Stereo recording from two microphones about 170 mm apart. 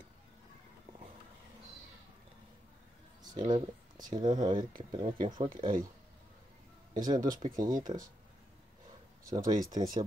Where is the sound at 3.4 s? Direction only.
45° right (ahead or behind).